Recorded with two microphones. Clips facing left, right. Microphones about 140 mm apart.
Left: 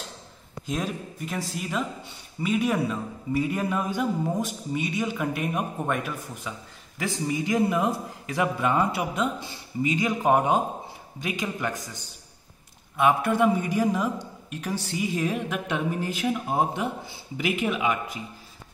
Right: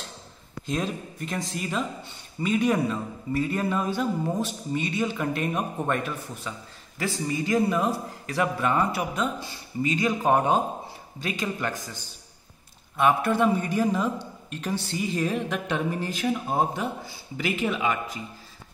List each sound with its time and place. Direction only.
0.7 s a man's voice: 5° left (ahead or behind)
12.9 s a man's voice: 15° left (ahead or behind)